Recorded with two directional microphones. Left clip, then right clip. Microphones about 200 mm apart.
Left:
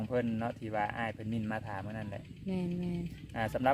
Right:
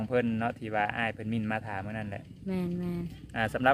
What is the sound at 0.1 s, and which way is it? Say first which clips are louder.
Speech: right 5 dB; 50° right (ahead or behind).